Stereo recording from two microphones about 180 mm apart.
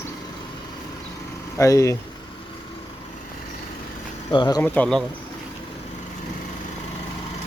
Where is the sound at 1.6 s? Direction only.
15° left (ahead or behind).